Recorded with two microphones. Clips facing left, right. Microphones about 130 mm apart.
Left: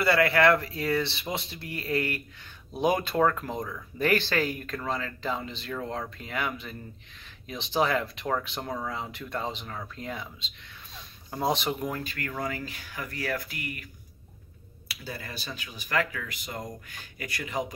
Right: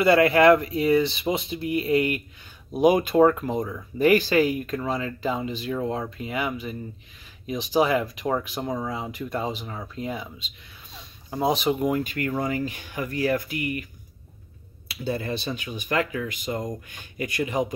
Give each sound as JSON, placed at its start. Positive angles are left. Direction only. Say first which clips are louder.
{"t": 0.0, "sound": "speech", "louder": "right 5 dB", "side_deg": -20}
{"t": 11.9, "sound": "speech", "louder": "right 9 dB", "side_deg": -20}
{"t": 14.9, "sound": "speech", "louder": "right 11 dB", "side_deg": -25}